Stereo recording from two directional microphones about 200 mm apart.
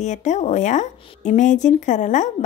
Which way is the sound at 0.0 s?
35° left (ahead or behind).